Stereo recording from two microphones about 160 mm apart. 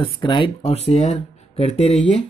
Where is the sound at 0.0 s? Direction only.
30° left (ahead or behind).